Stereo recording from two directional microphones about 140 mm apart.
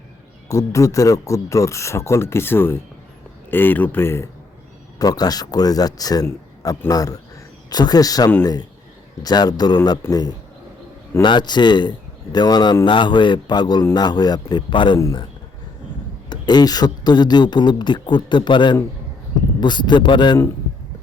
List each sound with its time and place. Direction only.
0.4 s speech: 20° left (ahead or behind)
4.9 s speech: 30° left (ahead or behind)
14.9 s speech: 20° left (ahead or behind)
16.3 s speech: 30° left (ahead or behind)